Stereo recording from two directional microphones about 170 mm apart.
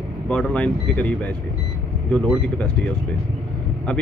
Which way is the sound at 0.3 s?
5° left (ahead or behind).